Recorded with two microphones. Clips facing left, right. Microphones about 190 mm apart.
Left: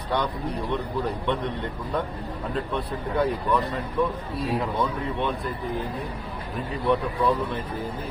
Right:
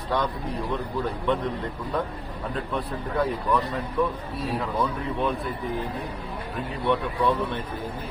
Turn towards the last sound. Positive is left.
turn(degrees=0)  # may be behind; listen again after turning